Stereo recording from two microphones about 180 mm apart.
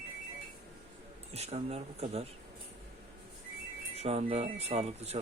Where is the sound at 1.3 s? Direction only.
35° right (ahead or behind).